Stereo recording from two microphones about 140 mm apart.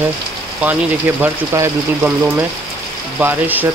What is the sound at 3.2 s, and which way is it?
Speech, 15° right (ahead or behind).